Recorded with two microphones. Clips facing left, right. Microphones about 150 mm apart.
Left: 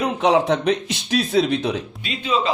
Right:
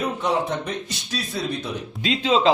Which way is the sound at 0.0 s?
90° left.